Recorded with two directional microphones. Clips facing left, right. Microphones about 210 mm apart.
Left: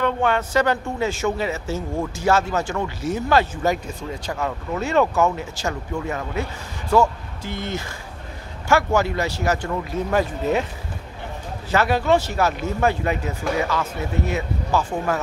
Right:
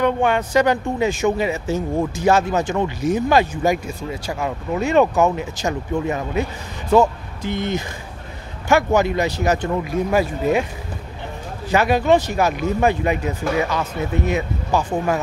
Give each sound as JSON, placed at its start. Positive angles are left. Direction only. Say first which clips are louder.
{"t": 0.0, "sound": "speech", "louder": "right 3 dB", "side_deg": -15}
{"t": 11.7, "sound": "speech", "louder": "right 3 dB", "side_deg": -15}